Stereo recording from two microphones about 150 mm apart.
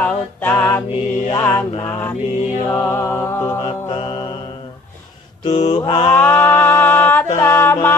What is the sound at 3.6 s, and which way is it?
Music, 35° left (ahead or behind).